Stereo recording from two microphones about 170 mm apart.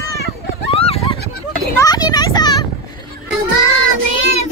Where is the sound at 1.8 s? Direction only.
20° left (ahead or behind).